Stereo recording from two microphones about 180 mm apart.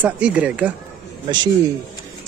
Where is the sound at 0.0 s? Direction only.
5° right (ahead or behind).